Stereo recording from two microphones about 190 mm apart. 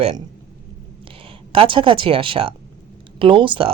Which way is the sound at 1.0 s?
30° right (ahead or behind).